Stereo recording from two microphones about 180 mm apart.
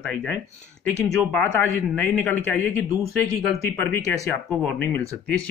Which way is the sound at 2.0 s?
10° left (ahead or behind).